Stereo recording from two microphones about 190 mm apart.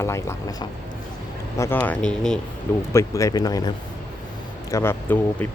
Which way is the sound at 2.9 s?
15° left (ahead or behind).